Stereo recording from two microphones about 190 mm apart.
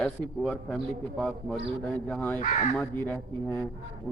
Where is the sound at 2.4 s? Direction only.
40° left (ahead or behind).